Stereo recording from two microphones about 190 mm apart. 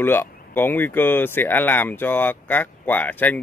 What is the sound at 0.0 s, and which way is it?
Speech, 10° left (ahead or behind).